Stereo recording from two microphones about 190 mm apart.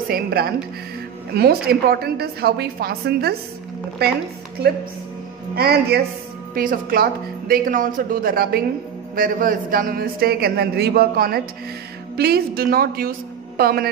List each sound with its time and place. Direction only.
0.1 s a man's voice: 55° right (ahead or behind)